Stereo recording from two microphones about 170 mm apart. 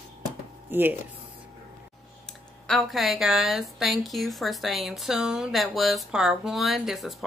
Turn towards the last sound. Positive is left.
turn(degrees=0)  # may be behind; listen again after turning